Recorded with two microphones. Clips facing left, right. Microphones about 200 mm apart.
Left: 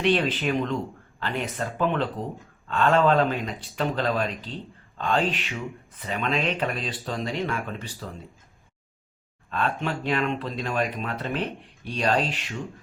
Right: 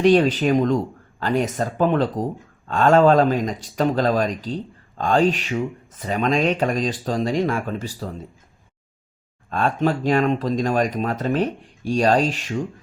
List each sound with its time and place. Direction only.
0.0 s speech: 40° right (ahead or behind)
9.5 s speech: 40° right (ahead or behind)